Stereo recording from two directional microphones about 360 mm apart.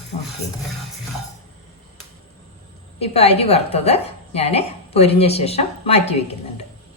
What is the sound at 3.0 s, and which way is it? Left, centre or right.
A woman's voice, centre.